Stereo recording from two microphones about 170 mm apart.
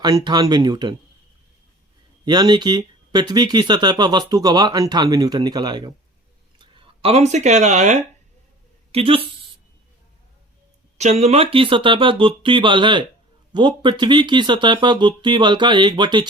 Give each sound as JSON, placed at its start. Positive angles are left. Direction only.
{"t": 0.3, "sound": "speech", "side_deg": -25}
{"t": 2.2, "sound": "a woman's voice", "side_deg": -25}
{"t": 10.9, "sound": "speech", "side_deg": -40}